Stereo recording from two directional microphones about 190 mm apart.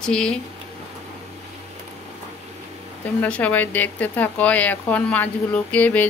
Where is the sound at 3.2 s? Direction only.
10° left (ahead or behind).